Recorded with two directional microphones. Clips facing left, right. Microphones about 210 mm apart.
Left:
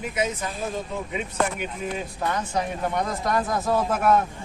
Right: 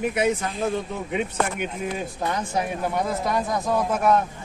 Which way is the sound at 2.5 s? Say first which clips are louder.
Right 1 dB; 5° right (ahead or behind).